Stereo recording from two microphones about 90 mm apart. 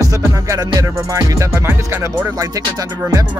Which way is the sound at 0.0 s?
40° right (ahead or behind).